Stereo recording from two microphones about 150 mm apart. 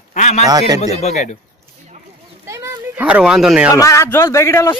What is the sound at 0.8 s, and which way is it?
Speech, 50° left (ahead or behind).